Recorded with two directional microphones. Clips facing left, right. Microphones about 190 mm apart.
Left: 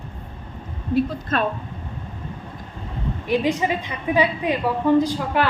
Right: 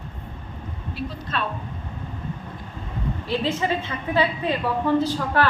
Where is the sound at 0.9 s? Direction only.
50° left (ahead or behind).